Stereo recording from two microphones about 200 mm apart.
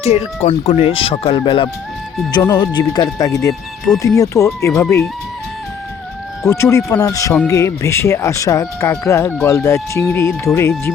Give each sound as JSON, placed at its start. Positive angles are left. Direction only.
{"t": 0.0, "sound": "speech", "side_deg": 30}
{"t": 3.9, "sound": "speech", "side_deg": 5}
{"t": 4.2, "sound": "speech", "side_deg": 15}
{"t": 6.5, "sound": "speech", "side_deg": 15}